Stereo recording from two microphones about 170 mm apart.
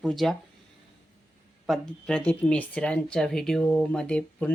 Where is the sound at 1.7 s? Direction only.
10° left (ahead or behind).